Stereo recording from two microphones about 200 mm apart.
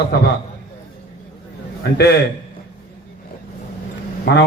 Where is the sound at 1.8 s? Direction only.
55° left (ahead or behind).